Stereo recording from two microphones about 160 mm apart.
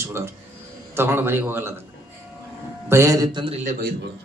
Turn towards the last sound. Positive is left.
turn(degrees=-55)  # may be behind; listen again after turning